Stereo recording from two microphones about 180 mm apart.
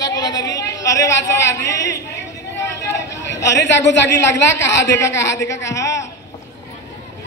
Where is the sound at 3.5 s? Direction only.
80° left.